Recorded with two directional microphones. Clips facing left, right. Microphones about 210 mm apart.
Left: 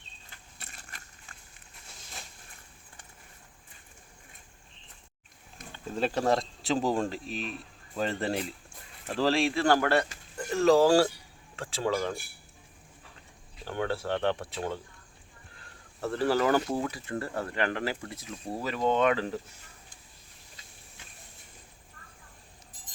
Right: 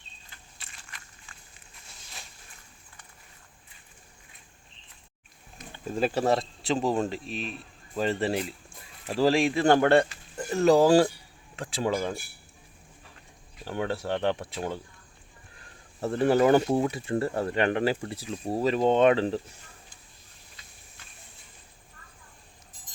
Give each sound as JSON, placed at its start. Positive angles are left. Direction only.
{"t": 0.7, "sound": "vehicle", "side_deg": 45}
{"t": 5.7, "sound": "speech", "side_deg": -10}
{"t": 13.7, "sound": "speech", "side_deg": -15}
{"t": 16.0, "sound": "speech", "side_deg": -20}